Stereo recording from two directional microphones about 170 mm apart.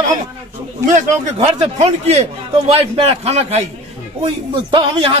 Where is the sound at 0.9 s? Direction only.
40° right (ahead or behind).